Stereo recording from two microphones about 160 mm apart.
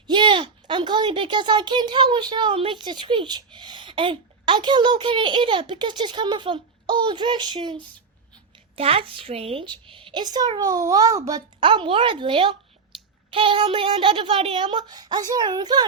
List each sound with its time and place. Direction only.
0.1 s a child's voice: 30° right (ahead or behind)